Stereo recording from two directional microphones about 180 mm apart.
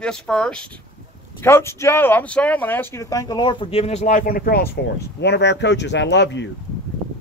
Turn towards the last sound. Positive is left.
turn(degrees=80)